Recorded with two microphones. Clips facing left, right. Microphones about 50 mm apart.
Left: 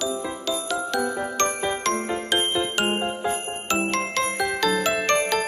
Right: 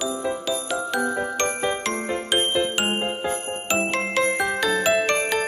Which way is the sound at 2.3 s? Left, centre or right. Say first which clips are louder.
Right 2 dB; centre.